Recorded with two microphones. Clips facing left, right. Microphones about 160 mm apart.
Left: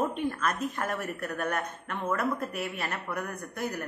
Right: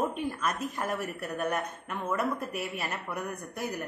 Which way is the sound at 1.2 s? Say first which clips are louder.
Even; 15° right (ahead or behind).